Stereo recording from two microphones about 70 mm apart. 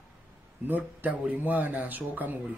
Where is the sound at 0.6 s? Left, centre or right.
Right.